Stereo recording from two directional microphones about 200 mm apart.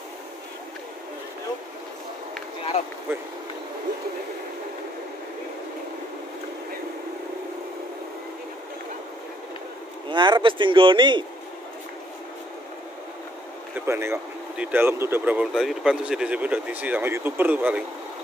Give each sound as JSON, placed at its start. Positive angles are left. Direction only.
{"t": 10.0, "sound": "speech", "side_deg": -25}
{"t": 13.7, "sound": "speech", "side_deg": -10}